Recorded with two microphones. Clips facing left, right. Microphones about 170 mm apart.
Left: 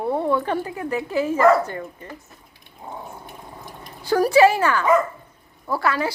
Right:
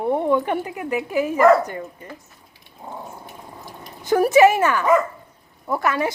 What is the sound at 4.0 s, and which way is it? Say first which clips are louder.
Dog: right 1 dB; 20° right (ahead or behind).